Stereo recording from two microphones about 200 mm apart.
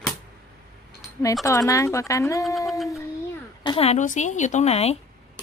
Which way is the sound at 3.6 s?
25° left (ahead or behind).